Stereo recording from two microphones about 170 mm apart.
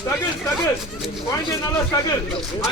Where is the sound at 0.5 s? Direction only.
Centre (ahead or behind).